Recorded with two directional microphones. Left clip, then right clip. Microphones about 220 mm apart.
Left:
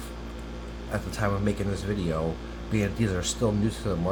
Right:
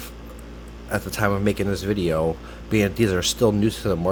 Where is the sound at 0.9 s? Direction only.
45° right (ahead or behind).